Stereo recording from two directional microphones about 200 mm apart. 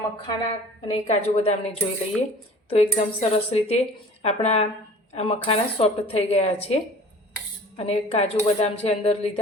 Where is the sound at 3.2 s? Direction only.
35° left (ahead or behind).